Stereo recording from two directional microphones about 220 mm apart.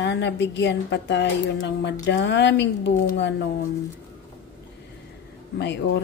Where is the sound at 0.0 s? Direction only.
50° left (ahead or behind).